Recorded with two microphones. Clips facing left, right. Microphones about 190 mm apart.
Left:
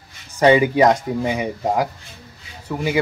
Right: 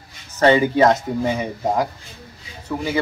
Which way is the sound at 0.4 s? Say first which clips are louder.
Left 1 dB; 15° left (ahead or behind).